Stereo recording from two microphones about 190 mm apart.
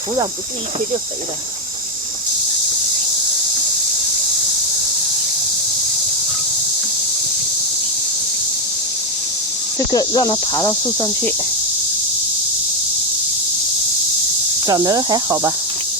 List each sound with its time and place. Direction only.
9.7 s speech: 20° left (ahead or behind)
14.7 s speech: 20° right (ahead or behind)